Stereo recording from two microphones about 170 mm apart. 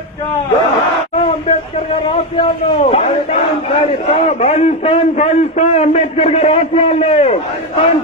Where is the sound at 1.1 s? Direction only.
35° left (ahead or behind).